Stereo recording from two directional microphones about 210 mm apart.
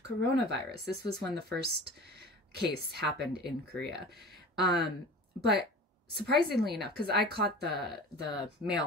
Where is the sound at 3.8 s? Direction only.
50° right (ahead or behind).